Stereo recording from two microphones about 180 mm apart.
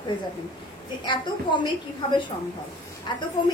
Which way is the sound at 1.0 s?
25° left (ahead or behind).